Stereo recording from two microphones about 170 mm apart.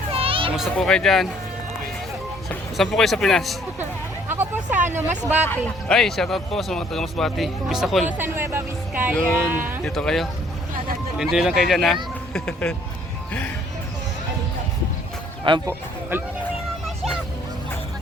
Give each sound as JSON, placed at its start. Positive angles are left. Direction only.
{"t": 0.1, "sound": "children playing", "side_deg": -35}
{"t": 0.5, "sound": "speech", "side_deg": 0}
{"t": 2.7, "sound": "speech", "side_deg": 0}
{"t": 4.3, "sound": "a sound", "side_deg": -10}
{"t": 4.9, "sound": "speech", "side_deg": -10}
{"t": 5.5, "sound": "speech", "side_deg": 0}
{"t": 8.2, "sound": "speech", "side_deg": -15}
{"t": 9.8, "sound": "speech", "side_deg": 5}
{"t": 15.6, "sound": "speech", "side_deg": -10}
{"t": 16.8, "sound": "music", "side_deg": 0}